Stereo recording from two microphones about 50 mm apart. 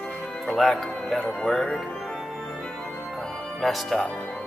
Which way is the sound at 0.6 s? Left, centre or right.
Centre.